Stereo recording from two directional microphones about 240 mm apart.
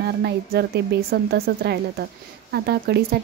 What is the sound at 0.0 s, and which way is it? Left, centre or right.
A woman's voice, right.